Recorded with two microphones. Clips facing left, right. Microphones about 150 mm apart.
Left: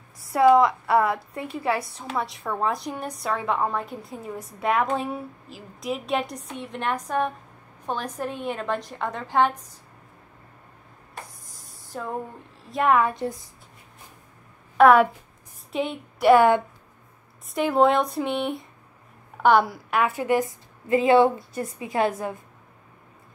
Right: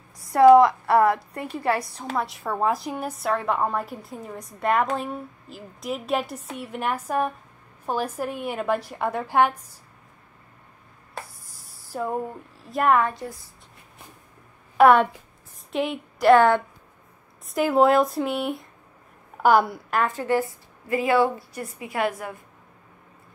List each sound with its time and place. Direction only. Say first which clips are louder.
0.6 s a woman's voice: right 3 dB; centre (ahead or behind)
11.9 s a woman's voice: right 4 dB; 10° right (ahead or behind)
14.8 s a woman's voice: even; centre (ahead or behind)
17.5 s a woman's voice: right 1 dB; centre (ahead or behind); by 22.4 s 25° left (ahead or behind)